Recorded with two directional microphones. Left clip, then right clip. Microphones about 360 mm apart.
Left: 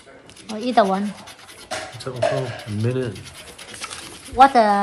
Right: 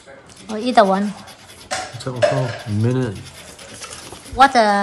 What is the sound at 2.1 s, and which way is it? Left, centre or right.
Speech, right.